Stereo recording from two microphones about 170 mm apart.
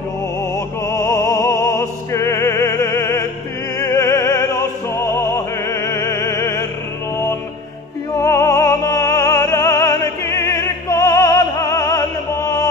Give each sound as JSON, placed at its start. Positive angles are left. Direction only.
{"t": 0.8, "sound": "opera", "side_deg": 15}
{"t": 8.2, "sound": "music", "side_deg": 15}